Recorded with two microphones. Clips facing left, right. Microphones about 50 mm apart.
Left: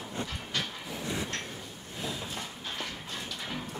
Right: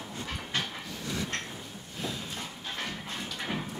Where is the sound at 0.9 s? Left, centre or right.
Centre.